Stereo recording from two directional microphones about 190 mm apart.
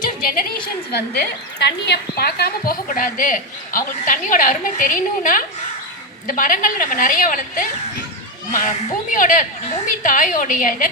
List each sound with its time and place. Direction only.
0.9 s a woman's voice: 60° left (ahead or behind)